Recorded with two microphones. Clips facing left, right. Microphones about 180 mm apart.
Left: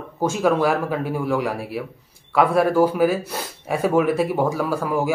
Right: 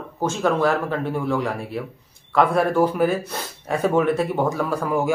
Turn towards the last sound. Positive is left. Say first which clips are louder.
# even
turn(degrees=5)  # may be behind; listen again after turning